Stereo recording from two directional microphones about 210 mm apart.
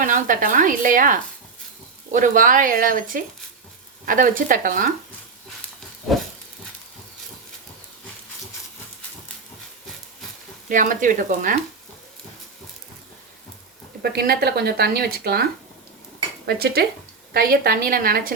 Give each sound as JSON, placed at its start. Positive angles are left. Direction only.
{"t": 0.0, "sound": "speech", "side_deg": -40}
{"t": 2.1, "sound": "speech", "side_deg": -40}
{"t": 10.7, "sound": "speech", "side_deg": -40}
{"t": 14.0, "sound": "speech", "side_deg": -50}
{"t": 16.5, "sound": "speech", "side_deg": -50}